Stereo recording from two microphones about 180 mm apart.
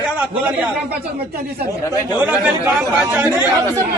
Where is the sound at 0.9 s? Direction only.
60° right (ahead or behind).